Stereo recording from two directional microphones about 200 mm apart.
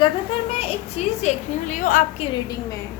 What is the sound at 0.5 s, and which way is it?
Speech, 30° left (ahead or behind).